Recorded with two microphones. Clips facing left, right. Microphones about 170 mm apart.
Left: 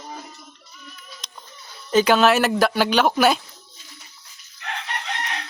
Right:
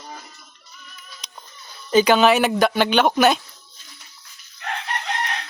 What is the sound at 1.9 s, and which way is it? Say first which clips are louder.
Speech: right 1 dB; centre (ahead or behind).